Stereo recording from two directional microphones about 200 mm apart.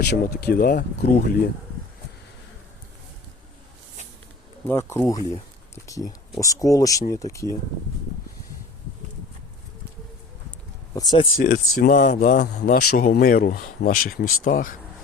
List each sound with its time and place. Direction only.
0.0 s speech: 55° left (ahead or behind)
4.6 s speech: 10° left (ahead or behind)
10.9 s speech: 20° left (ahead or behind)
11.3 s speech: 45° left (ahead or behind)